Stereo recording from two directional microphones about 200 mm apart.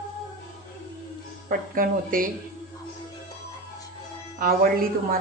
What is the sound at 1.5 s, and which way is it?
Speech, 45° right (ahead or behind).